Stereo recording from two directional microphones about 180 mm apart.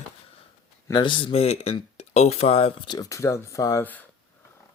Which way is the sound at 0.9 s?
25° left (ahead or behind).